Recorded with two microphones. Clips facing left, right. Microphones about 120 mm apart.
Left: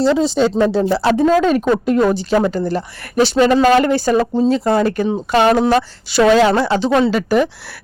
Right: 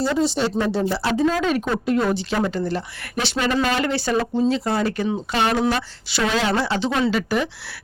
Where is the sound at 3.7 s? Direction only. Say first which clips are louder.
Left 9 dB; 50° left (ahead or behind).